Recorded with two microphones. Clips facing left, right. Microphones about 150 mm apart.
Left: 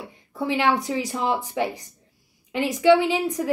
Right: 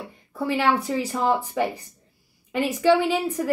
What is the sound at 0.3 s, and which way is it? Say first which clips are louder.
Speech: even; 15° left (ahead or behind).